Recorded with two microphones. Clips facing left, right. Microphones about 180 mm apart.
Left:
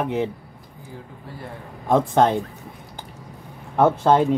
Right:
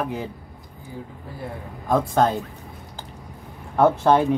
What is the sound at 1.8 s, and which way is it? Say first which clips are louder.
Speech: left 2 dB; 25° left (ahead or behind).